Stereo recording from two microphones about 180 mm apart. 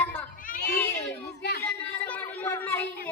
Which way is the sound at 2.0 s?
10° left (ahead or behind).